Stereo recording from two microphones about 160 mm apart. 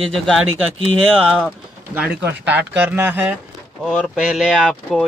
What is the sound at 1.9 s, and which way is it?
Speech, 10° right (ahead or behind).